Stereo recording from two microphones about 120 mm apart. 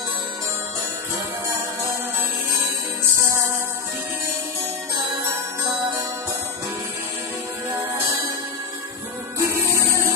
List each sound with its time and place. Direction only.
9.4 s music: 25° right (ahead or behind)